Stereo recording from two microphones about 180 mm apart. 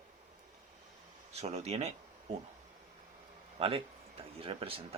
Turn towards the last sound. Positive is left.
turn(degrees=-30)  # may be behind; listen again after turning